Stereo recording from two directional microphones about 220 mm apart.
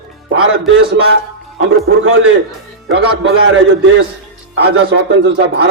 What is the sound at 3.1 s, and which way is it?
Speech, 60° right (ahead or behind).